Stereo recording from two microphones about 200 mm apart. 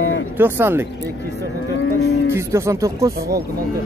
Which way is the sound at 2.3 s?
15° right (ahead or behind).